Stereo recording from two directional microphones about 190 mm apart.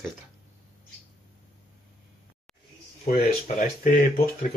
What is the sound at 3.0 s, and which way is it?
Speech, 45° left (ahead or behind).